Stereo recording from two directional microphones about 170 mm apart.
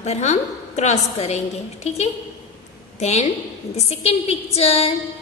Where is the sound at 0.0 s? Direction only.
40° left (ahead or behind).